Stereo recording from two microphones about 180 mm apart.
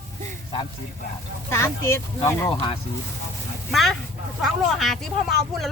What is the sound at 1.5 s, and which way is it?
Speech, 15° left (ahead or behind).